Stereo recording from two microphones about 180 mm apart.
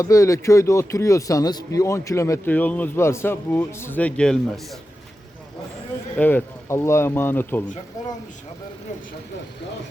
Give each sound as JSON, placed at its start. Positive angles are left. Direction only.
{"t": 0.0, "sound": "speech", "side_deg": 20}
{"t": 6.1, "sound": "speech", "side_deg": 10}